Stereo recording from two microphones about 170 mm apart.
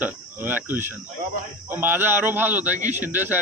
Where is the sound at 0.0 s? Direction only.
10° right (ahead or behind).